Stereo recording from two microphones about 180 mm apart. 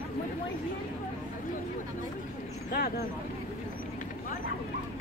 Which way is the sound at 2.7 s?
60° left (ahead or behind).